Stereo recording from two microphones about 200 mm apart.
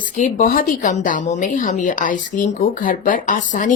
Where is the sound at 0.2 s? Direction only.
40° left (ahead or behind).